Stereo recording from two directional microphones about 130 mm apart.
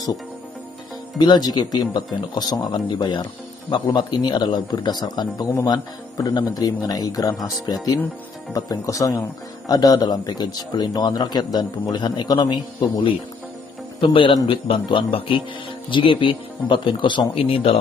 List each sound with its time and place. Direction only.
1.1 s a man's voice: 30° left (ahead or behind)
14.0 s a man's voice: 40° left (ahead or behind)